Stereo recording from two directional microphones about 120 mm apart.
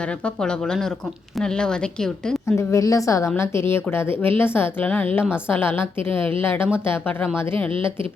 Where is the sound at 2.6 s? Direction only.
25° left (ahead or behind).